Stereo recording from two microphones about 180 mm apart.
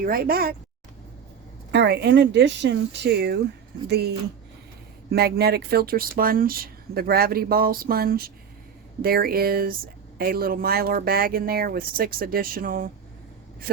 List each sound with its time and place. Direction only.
0.0 s a woman's voice: 55° right (ahead or behind)
1.7 s speech: 75° right (ahead or behind)
5.1 s speech: 60° right (ahead or behind)